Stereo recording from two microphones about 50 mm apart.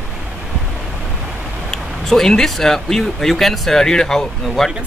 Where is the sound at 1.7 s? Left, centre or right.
Centre.